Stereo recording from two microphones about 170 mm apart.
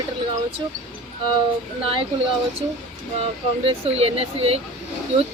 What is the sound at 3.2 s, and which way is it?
Speech, 35° right (ahead or behind).